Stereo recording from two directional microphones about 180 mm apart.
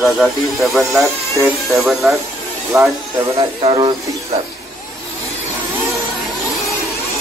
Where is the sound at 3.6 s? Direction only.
30° right (ahead or behind).